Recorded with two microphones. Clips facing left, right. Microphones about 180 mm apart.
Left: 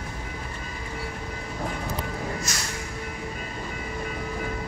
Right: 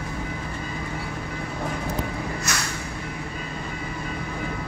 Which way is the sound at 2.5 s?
65° right (ahead or behind).